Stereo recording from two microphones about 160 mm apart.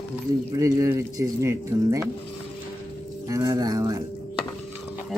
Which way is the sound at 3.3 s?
20° right (ahead or behind).